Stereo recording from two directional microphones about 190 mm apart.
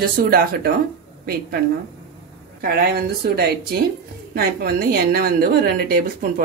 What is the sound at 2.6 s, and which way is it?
A woman's voice, 55° right (ahead or behind).